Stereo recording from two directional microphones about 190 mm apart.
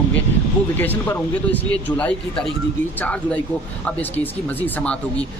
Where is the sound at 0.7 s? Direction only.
10° left (ahead or behind).